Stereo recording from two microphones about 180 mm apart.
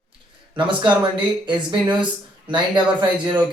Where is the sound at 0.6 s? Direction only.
25° right (ahead or behind).